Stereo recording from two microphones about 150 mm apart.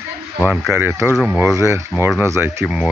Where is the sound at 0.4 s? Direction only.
10° right (ahead or behind).